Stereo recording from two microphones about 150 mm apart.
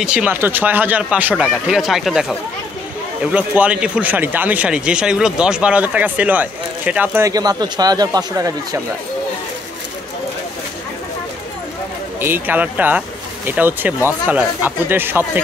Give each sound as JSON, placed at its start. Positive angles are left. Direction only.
{"t": 0.0, "sound": "speech", "side_deg": -5}
{"t": 3.3, "sound": "speech", "side_deg": -10}
{"t": 7.2, "sound": "speech", "side_deg": -25}
{"t": 12.2, "sound": "speech", "side_deg": -15}